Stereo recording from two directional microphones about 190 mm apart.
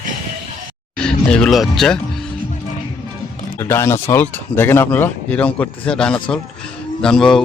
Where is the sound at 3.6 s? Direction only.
15° left (ahead or behind).